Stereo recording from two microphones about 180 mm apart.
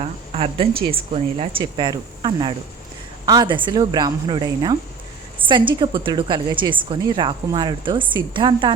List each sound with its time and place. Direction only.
0.0 s a woman's voice: 35° right (ahead or behind)